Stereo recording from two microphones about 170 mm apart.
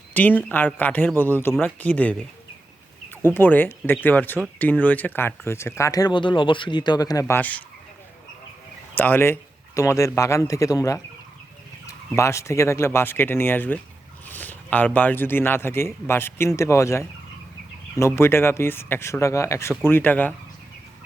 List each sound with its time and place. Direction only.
0.1 s speech: 10° left (ahead or behind)
3.2 s speech: 10° left (ahead or behind)
9.0 s speech: 10° left (ahead or behind)